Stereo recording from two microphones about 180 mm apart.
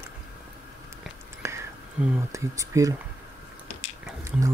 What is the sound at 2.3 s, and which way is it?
Speech, 15° right (ahead or behind).